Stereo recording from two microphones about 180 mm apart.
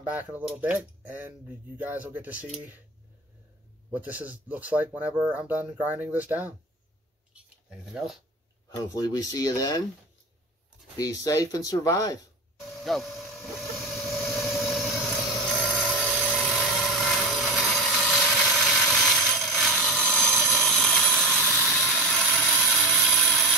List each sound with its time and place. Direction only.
0.0 s speech: 10° right (ahead or behind)
3.9 s speech: 10° right (ahead or behind)
8.7 s speech: 20° left (ahead or behind)
11.0 s speech: 20° left (ahead or behind)
12.8 s vehicle: centre (ahead or behind)